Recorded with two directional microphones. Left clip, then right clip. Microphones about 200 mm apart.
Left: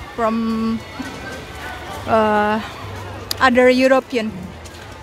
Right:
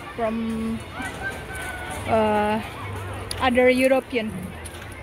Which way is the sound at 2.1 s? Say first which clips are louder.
Left 5 dB; 10° left (ahead or behind).